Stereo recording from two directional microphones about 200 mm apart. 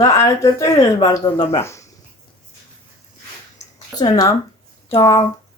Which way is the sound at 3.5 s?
20° left (ahead or behind).